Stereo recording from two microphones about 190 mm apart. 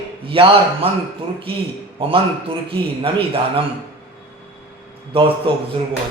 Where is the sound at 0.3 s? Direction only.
30° right (ahead or behind).